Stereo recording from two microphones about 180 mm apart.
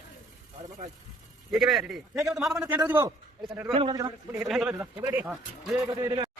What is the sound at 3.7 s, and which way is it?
Speech, 30° right (ahead or behind).